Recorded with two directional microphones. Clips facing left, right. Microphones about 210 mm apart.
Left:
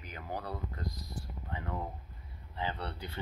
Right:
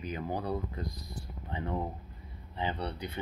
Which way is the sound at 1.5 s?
25° right (ahead or behind).